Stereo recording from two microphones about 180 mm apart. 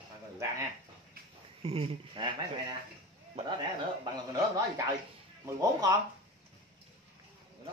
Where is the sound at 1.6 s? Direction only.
35° right (ahead or behind).